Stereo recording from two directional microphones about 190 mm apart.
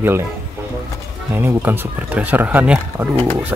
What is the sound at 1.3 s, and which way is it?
Speech, 10° right (ahead or behind).